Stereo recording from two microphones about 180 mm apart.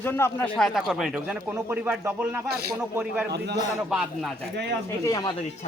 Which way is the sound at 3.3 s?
65° right (ahead or behind).